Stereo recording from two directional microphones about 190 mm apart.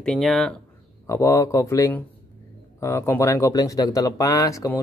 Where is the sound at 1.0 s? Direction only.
15° left (ahead or behind).